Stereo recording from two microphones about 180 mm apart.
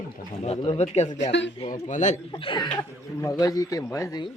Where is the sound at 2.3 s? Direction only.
25° left (ahead or behind).